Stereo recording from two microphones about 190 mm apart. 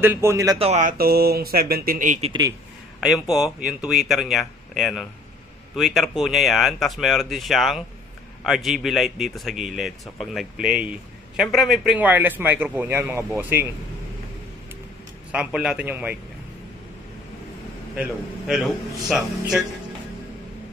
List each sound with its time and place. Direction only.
0.0 s a man's voice: 10° right (ahead or behind)
0.6 s speech: 35° right (ahead or behind)
0.9 s speech: 55° right (ahead or behind)
3.0 s a man's voice: centre (ahead or behind)
15.3 s a man's voice: 5° right (ahead or behind)
17.9 s a man's voice: centre (ahead or behind)